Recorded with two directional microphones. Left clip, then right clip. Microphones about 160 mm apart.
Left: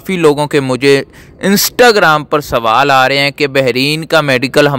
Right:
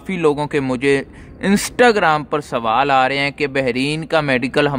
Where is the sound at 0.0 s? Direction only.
30° left (ahead or behind).